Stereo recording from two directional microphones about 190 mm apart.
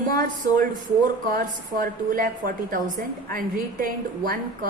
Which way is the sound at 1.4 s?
45° right (ahead or behind).